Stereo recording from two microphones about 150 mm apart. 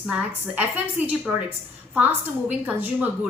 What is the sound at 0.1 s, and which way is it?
A woman's voice, 10° right (ahead or behind).